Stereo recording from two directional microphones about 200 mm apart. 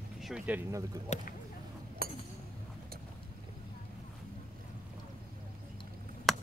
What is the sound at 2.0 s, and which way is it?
Chink, 45° right (ahead or behind).